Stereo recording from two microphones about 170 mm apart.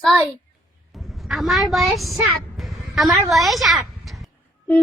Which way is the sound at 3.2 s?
Centre (ahead or behind).